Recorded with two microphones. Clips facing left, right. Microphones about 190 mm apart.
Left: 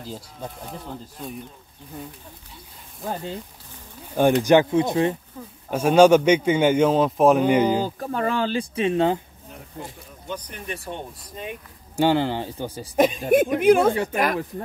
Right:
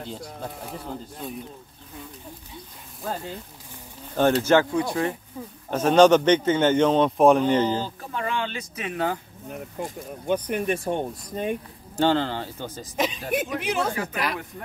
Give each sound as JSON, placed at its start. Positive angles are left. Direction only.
{"t": 1.2, "sound": "speech", "side_deg": 0}
{"t": 4.1, "sound": "a man's voice", "side_deg": 15}
{"t": 5.7, "sound": "a man's voice", "side_deg": 10}
{"t": 7.8, "sound": "speech", "side_deg": 40}
{"t": 10.2, "sound": "speech", "side_deg": -55}
{"t": 12.0, "sound": "a man's voice", "side_deg": 15}
{"t": 12.9, "sound": "speech", "side_deg": 50}